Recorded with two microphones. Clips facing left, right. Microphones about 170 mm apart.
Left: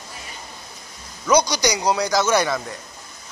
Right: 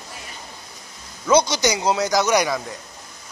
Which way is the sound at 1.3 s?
25° right (ahead or behind).